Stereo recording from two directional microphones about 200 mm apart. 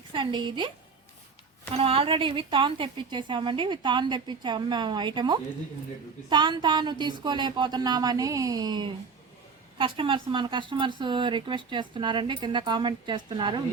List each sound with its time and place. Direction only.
0.1 s speech: 25° right (ahead or behind)
1.7 s speech: 30° right (ahead or behind)